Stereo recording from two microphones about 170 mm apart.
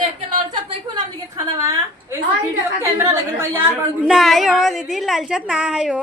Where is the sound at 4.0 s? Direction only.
Centre (ahead or behind).